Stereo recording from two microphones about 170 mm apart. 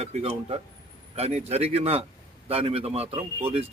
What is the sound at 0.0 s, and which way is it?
A man's voice, 40° right (ahead or behind).